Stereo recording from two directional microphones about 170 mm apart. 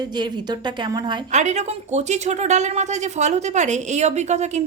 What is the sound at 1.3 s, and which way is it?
A woman's voice, 45° right (ahead or behind).